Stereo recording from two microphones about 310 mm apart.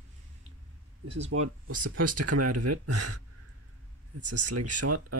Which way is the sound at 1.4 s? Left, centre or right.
Right.